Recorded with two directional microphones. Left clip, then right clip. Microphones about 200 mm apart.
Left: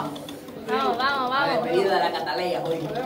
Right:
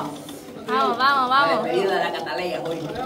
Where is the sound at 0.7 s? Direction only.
60° right (ahead or behind).